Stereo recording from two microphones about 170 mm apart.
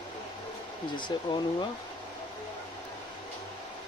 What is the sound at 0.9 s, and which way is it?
Speech, 25° left (ahead or behind).